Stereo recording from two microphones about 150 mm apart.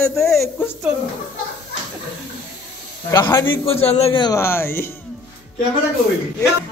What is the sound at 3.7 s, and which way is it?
Speech, 40° left (ahead or behind).